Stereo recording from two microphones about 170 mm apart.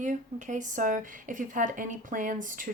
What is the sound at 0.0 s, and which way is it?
Speech, 45° right (ahead or behind).